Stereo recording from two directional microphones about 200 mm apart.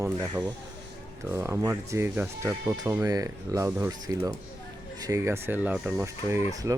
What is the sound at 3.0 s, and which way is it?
Speech, 20° right (ahead or behind).